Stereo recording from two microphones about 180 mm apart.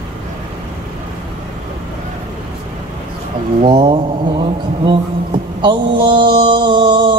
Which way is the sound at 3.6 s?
25° right (ahead or behind).